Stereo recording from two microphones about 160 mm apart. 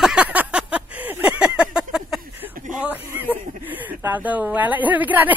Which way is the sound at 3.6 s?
10° right (ahead or behind).